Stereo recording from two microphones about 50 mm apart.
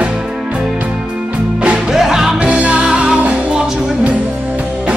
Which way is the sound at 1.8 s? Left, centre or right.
Centre.